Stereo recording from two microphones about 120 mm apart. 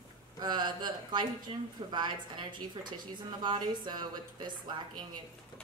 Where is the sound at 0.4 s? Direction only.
35° right (ahead or behind).